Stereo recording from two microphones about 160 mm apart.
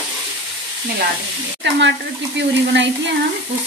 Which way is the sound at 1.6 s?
90° right.